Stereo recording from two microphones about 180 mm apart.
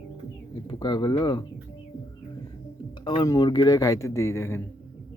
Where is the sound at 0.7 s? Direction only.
20° left (ahead or behind).